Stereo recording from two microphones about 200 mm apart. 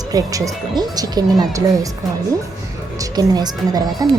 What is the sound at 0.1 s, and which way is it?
Speech, 15° right (ahead or behind).